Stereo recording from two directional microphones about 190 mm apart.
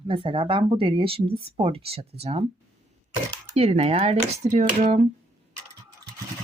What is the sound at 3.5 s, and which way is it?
Speech, 35° right (ahead or behind).